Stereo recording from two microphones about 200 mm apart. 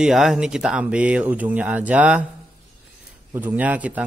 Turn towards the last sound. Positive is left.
turn(degrees=-5)  # may be behind; listen again after turning